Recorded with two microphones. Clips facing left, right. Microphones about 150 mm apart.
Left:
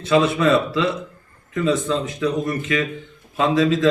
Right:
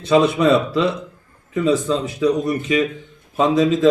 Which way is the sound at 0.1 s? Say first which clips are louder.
Right 2 dB; 15° right (ahead or behind).